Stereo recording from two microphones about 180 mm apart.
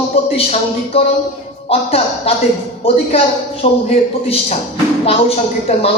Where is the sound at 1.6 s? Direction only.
35° left (ahead or behind).